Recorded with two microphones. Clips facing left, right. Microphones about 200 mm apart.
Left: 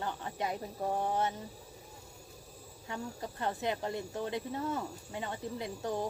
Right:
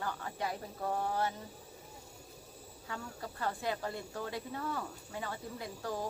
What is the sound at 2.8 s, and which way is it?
Speech, 20° left (ahead or behind).